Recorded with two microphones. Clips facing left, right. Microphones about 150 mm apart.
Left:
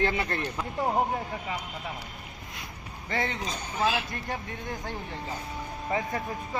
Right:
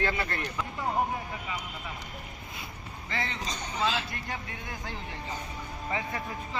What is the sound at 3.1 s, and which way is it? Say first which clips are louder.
Speech: left 5 dB; 50° left (ahead or behind).